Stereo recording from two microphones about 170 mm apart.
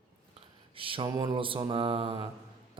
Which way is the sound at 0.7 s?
30° right (ahead or behind).